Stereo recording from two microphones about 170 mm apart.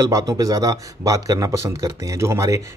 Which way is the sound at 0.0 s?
20° right (ahead or behind).